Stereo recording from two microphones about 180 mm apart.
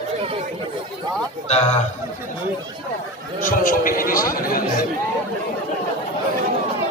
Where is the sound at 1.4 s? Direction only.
35° left (ahead or behind).